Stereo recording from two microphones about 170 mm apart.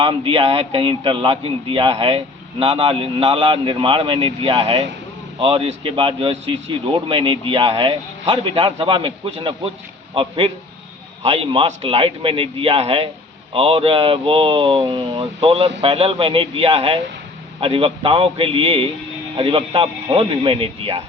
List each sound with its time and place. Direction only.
0.0 s a man's voice: 30° right (ahead or behind)